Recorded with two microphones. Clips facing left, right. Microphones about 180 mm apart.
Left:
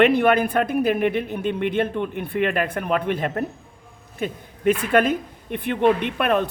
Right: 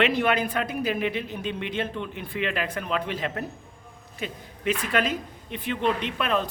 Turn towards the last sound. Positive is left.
turn(degrees=55)  # may be behind; listen again after turning